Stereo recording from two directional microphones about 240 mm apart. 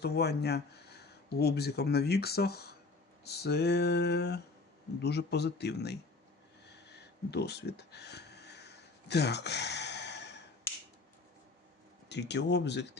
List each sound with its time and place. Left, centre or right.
0.0 s speech: left
6.7 s a sound: left
12.0 s speech: left